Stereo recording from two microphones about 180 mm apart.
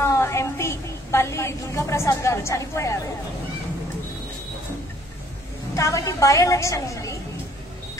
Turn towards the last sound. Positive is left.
turn(degrees=20)  # may be behind; listen again after turning